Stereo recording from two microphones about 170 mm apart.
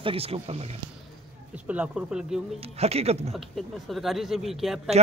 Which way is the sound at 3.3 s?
Centre (ahead or behind).